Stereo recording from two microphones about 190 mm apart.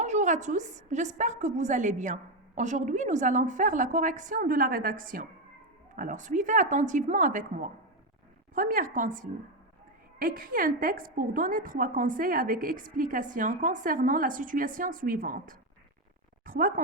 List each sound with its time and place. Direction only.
0.0 s a woman's voice: 40° right (ahead or behind)
10.2 s a woman's voice: 50° right (ahead or behind)